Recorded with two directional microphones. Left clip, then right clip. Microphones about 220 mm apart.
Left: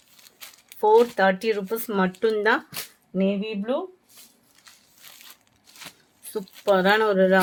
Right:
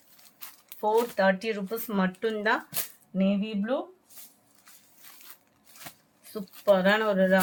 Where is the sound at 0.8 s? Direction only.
50° left (ahead or behind).